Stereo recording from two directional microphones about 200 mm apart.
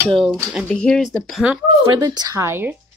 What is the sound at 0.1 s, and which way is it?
Speech, centre (ahead or behind).